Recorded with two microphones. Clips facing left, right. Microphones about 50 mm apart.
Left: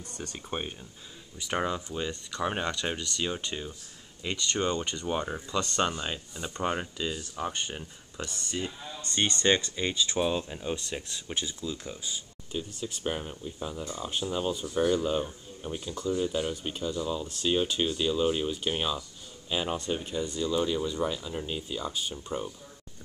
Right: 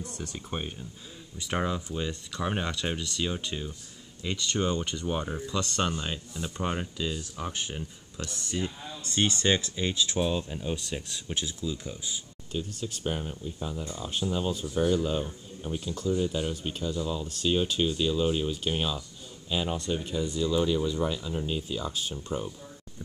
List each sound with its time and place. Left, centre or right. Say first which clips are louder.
0.0 s speech: right 2 dB; centre
0.5 s speech: left 2 dB; centre
12.8 s speech: left 1 dB; centre